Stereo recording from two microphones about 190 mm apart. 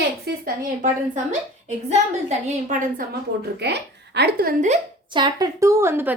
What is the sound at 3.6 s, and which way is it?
Speech, 60° right (ahead or behind).